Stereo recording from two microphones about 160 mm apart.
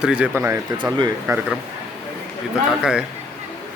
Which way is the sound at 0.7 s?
30° right (ahead or behind).